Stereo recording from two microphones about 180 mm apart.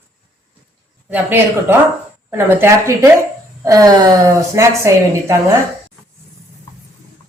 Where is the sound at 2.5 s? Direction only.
15° right (ahead or behind).